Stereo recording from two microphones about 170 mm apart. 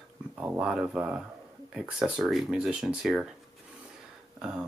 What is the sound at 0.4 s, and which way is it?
Speech, 10° right (ahead or behind).